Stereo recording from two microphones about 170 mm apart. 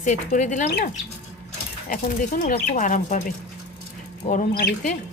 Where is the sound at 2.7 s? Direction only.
50° left (ahead or behind).